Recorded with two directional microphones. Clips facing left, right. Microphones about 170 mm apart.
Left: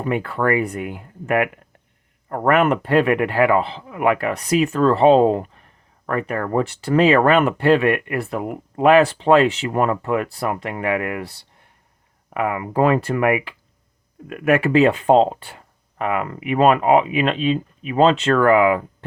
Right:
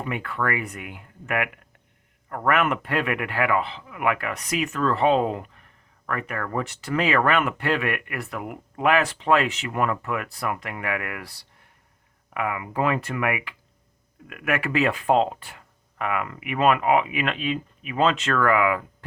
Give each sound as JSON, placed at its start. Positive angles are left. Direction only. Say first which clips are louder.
{"t": 0.0, "sound": "speech", "louder": "left 7 dB", "side_deg": 35}